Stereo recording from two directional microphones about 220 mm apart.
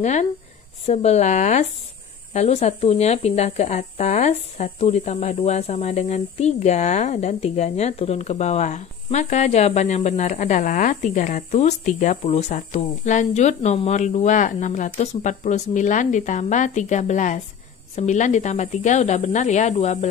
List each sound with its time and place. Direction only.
0.0 s speech: 30° left (ahead or behind)